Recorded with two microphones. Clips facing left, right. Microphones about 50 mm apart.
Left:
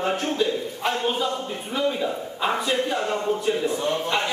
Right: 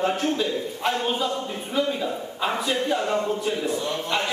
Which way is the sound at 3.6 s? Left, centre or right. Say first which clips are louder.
Left 2 dB; left.